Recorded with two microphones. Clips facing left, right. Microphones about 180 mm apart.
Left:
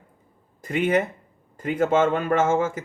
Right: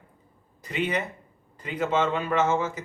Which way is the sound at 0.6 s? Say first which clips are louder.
Left 6 dB; 50° left (ahead or behind).